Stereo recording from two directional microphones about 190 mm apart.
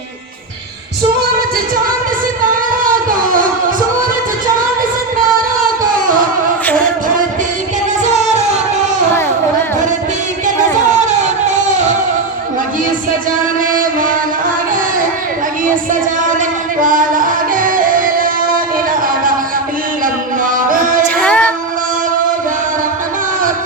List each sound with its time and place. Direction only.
2.4 s a sound: 45° right (ahead or behind)
13.7 s mantra: 45° right (ahead or behind)
16.4 s music: 45° right (ahead or behind)
20.4 s music: 45° right (ahead or behind)
21.0 s music: 5° left (ahead or behind)